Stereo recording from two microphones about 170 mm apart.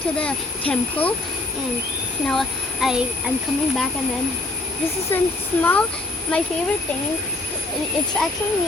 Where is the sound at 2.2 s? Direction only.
Centre (ahead or behind).